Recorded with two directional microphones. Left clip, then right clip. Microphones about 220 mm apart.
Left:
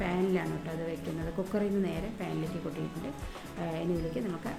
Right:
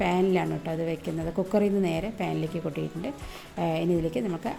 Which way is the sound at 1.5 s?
30° right (ahead or behind).